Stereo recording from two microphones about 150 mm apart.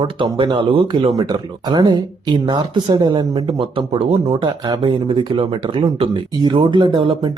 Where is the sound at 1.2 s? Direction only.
30° right (ahead or behind).